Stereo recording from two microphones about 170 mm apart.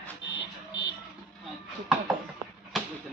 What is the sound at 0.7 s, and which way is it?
Television, 90° left.